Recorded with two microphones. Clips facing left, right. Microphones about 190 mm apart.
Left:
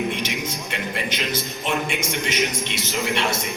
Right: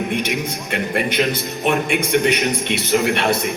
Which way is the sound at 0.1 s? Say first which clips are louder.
Right 5 dB; 55° right (ahead or behind).